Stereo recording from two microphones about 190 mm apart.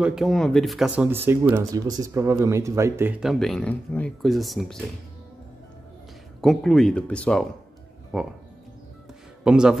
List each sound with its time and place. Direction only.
0.0 s speech: centre (ahead or behind)
6.4 s speech: centre (ahead or behind)
9.4 s speech: 5° right (ahead or behind)